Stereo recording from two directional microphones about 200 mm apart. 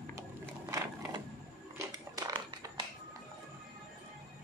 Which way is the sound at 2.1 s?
20° right (ahead or behind).